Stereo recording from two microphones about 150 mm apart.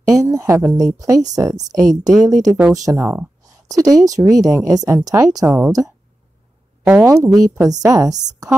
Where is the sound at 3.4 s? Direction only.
25° right (ahead or behind).